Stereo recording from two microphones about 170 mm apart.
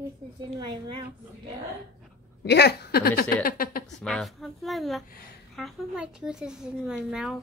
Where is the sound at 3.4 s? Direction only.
60° left (ahead or behind).